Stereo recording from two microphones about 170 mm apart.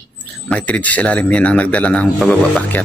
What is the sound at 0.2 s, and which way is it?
Speech, 10° left (ahead or behind).